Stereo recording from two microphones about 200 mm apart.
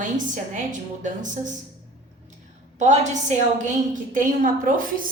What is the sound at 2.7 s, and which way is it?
A woman's voice, 35° right (ahead or behind).